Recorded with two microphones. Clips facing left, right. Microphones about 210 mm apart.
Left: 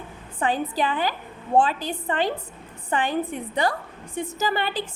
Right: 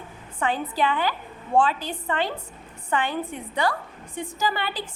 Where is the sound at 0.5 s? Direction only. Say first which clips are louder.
Right 1 dB; 45° left (ahead or behind).